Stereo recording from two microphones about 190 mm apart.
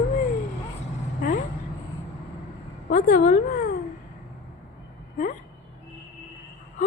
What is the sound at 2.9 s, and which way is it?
Speech, 45° left (ahead or behind).